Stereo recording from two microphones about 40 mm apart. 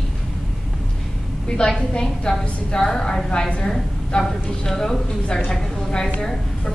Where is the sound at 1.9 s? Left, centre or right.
Centre.